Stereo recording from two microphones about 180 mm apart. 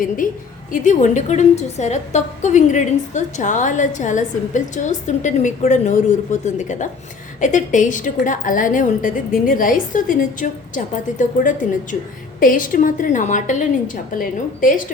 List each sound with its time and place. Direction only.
0.7 s a woman's voice: 45° left (ahead or behind)